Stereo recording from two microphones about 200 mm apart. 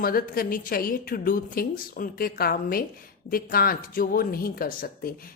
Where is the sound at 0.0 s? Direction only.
45° left (ahead or behind).